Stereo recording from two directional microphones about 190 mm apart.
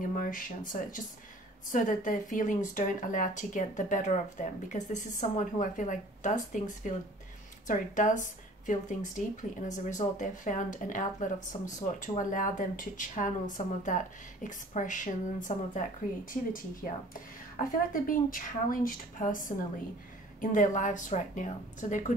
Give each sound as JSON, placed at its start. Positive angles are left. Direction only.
{"t": 0.0, "sound": "a woman's voice", "side_deg": 45}